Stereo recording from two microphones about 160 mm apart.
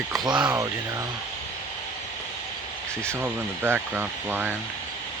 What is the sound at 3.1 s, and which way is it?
Speech, 15° right (ahead or behind).